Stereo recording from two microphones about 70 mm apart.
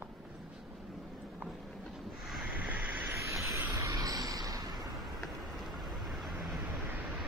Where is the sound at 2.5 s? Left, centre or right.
Right.